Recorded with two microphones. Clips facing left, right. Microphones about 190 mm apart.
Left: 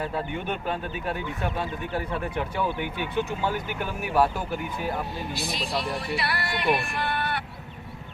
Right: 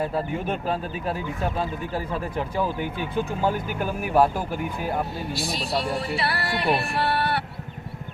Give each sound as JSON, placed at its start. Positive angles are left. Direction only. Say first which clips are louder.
{"t": 0.4, "sound": "speech", "louder": "right 3 dB", "side_deg": -35}
{"t": 2.6, "sound": "speech", "louder": "right 3 dB", "side_deg": -40}
{"t": 6.1, "sound": "music", "louder": "right 3 dB", "side_deg": -30}